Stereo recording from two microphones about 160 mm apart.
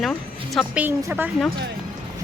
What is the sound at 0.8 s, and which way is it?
Speech, 10° right (ahead or behind).